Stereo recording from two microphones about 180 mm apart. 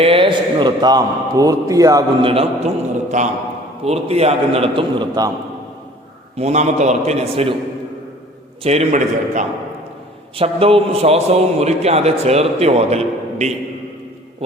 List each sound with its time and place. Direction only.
0.0 s a man's voice: 30° right (ahead or behind)
2.3 s a man's voice: 35° right (ahead or behind)
6.3 s a man's voice: 40° right (ahead or behind)
8.6 s a man's voice: 35° right (ahead or behind)
10.3 s a man's voice: 30° right (ahead or behind)